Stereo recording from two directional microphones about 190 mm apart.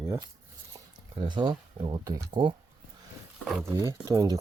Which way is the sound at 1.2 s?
25° right (ahead or behind).